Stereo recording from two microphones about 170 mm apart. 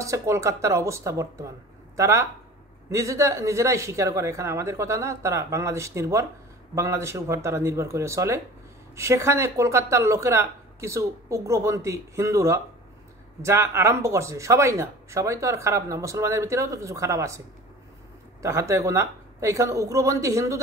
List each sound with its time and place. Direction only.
0.0 s speech: 20° right (ahead or behind)
18.4 s speech: 15° right (ahead or behind)